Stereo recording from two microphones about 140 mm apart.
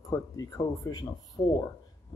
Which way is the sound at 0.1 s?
25° left (ahead or behind).